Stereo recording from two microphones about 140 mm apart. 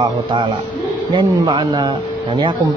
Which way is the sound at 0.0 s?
35° right (ahead or behind).